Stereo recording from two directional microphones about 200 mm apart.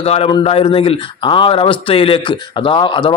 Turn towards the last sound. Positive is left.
turn(degrees=25)  # may be behind; listen again after turning